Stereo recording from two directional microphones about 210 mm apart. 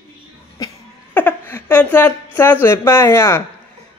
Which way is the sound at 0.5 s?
15° left (ahead or behind).